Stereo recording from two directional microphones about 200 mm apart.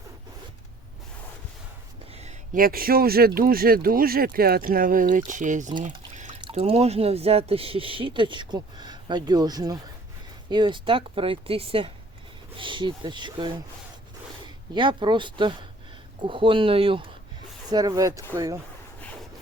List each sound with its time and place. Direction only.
2.1 s speech: 35° right (ahead or behind)
6.4 s speech: 30° right (ahead or behind)